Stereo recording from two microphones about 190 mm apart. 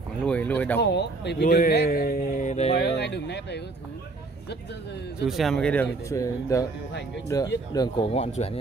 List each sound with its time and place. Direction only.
0.3 s speech: 10° left (ahead or behind)
0.7 s speech: 60° left (ahead or behind); by 2.7 s 40° left (ahead or behind)
2.7 s speech: 60° left (ahead or behind)
5.2 s speech: centre (ahead or behind); by 8.1 s 20° left (ahead or behind)
8.1 s speech: 35° left (ahead or behind)